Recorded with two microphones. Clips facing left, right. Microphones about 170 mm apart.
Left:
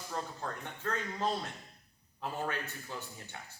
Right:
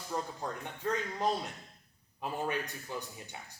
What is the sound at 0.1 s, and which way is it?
Speech, 15° right (ahead or behind).